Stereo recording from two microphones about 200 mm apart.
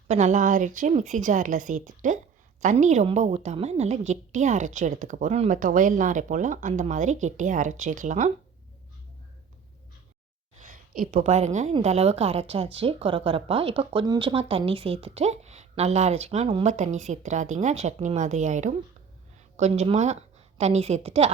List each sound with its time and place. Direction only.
0.1 s a woman's voice: 35° right (ahead or behind)
10.6 s a woman's voice: 40° right (ahead or behind)